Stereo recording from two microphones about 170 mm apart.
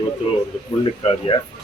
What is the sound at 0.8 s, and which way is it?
Speech, 30° left (ahead or behind).